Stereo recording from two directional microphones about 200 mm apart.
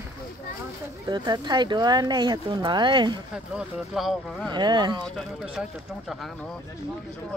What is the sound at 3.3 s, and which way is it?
Speech, centre (ahead or behind).